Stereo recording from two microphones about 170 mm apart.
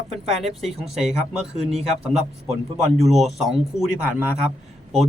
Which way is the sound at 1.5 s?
40° right (ahead or behind).